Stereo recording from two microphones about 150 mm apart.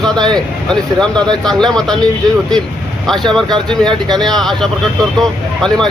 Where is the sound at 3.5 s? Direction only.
5° left (ahead or behind).